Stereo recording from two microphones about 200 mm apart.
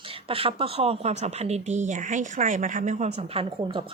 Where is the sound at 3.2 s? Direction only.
30° right (ahead or behind).